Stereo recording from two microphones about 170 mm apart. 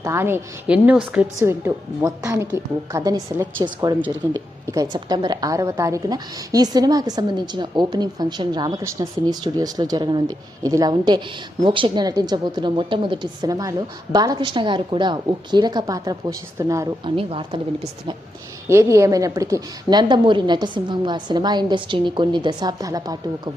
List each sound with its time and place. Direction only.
0.0 s a woman's voice: 15° right (ahead or behind)
17.2 s speech: 30° right (ahead or behind)
18.7 s a woman's voice: 15° right (ahead or behind)